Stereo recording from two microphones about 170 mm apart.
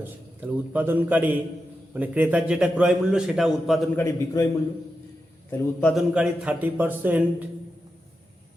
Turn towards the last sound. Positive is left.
turn(degrees=-10)  # may be behind; listen again after turning